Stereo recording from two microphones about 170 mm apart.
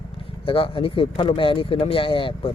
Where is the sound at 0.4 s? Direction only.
30° left (ahead or behind).